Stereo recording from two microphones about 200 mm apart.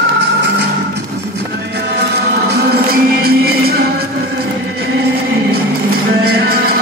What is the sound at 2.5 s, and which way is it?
Music, 50° right (ahead or behind).